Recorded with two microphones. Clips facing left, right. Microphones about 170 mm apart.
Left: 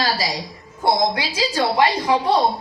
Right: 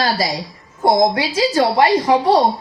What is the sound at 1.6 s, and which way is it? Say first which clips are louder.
Speech: right 3 dB; 45° right (ahead or behind).